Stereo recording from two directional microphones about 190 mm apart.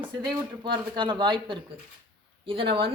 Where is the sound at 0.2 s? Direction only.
25° right (ahead or behind).